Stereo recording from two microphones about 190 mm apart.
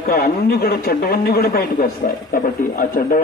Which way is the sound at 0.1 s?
55° left (ahead or behind).